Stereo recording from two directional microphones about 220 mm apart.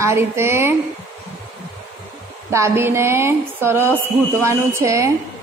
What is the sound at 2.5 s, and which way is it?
A woman's voice, 10° right (ahead or behind).